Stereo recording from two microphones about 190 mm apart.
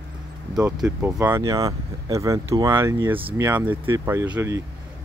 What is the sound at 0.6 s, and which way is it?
Speech, 15° right (ahead or behind).